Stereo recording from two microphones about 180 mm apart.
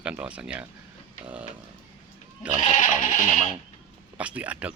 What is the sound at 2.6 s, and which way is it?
Goat, 40° left (ahead or behind).